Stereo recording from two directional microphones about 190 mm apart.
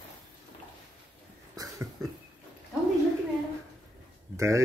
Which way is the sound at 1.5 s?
20° right (ahead or behind).